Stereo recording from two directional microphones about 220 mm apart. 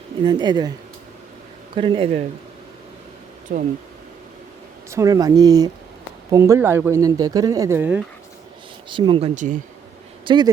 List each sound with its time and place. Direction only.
0.2 s speech: 20° right (ahead or behind)
1.7 s speech: 25° right (ahead or behind)
3.5 s speech: 40° right (ahead or behind)
4.9 s speech: 15° right (ahead or behind)
8.9 s speech: 20° right (ahead or behind)
10.2 s speech: 20° right (ahead or behind)